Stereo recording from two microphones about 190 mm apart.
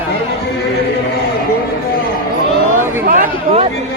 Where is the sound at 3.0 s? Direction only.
45° right (ahead or behind).